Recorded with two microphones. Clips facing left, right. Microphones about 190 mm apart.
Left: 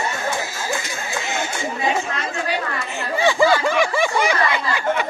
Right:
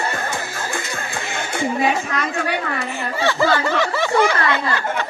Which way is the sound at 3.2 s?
10° left (ahead or behind).